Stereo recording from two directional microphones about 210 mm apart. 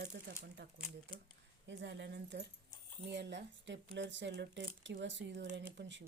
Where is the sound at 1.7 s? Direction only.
55° right (ahead or behind).